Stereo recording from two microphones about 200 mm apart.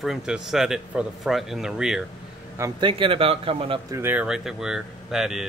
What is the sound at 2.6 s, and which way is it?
A man's voice, 25° right (ahead or behind).